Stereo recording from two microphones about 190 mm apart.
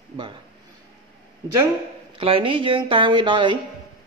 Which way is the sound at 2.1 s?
30° right (ahead or behind).